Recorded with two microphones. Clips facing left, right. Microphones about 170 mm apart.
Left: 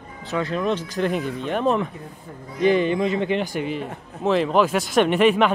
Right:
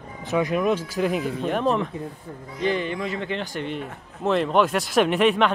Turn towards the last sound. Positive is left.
turn(degrees=0)  # may be behind; listen again after turning